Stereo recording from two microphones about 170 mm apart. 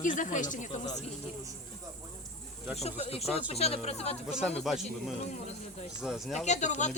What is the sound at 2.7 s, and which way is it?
Speech, 35° left (ahead or behind).